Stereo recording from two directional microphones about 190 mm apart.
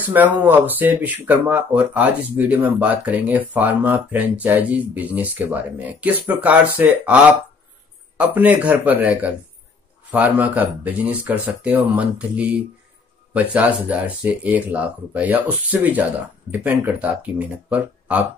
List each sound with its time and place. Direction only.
0.0 s speech: 10° right (ahead or behind)
8.2 s speech: 10° right (ahead or behind)